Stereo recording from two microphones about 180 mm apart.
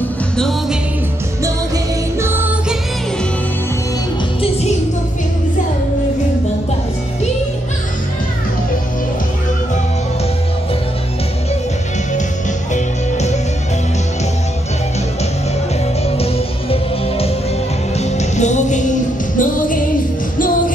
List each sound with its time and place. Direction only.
0.4 s music: centre (ahead or behind)
2.1 s music: 10° right (ahead or behind)
12.7 s music: 40° left (ahead or behind)
16.2 s music: 35° left (ahead or behind); by 20.7 s 50° left (ahead or behind)